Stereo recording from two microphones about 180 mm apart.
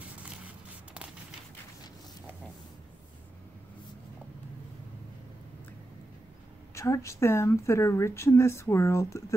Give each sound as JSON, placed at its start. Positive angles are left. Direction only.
{"t": 6.7, "sound": "speech", "side_deg": 15}